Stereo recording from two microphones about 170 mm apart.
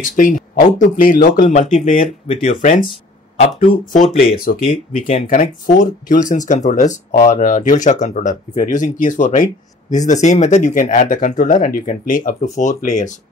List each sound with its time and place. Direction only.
0.0 s speech: 50° left (ahead or behind)
2.2 s speech: 35° left (ahead or behind)